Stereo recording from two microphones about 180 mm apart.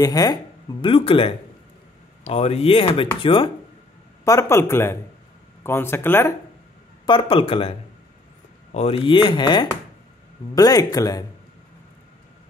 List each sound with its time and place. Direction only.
0.0 s speech: 20° left (ahead or behind)
4.2 s speech: 15° left (ahead or behind)
7.1 s speech: 25° left (ahead or behind)
8.7 s speech: 35° left (ahead or behind)